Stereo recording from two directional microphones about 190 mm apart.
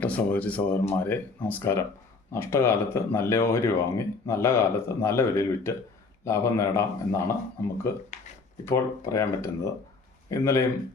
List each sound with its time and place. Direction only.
0.0 s speech: 5° left (ahead or behind)